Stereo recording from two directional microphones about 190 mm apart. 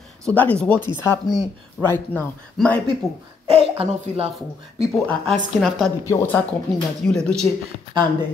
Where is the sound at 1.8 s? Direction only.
10° left (ahead or behind).